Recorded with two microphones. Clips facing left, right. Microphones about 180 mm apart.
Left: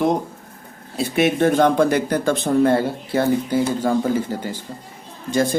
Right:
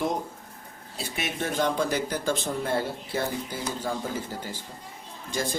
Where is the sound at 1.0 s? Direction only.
65° left (ahead or behind).